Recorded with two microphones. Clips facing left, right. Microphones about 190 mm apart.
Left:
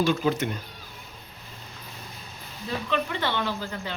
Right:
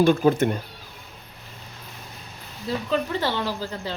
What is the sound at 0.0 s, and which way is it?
Speech, 50° right (ahead or behind).